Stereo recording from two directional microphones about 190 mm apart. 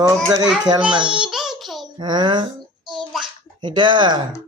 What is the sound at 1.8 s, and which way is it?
Speech, 20° right (ahead or behind).